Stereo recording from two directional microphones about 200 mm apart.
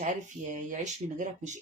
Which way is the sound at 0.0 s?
40° right (ahead or behind).